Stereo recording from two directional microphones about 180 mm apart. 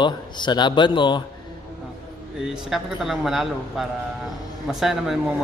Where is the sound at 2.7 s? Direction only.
Centre (ahead or behind).